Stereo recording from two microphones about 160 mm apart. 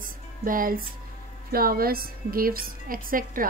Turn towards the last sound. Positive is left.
turn(degrees=-60)  # may be behind; listen again after turning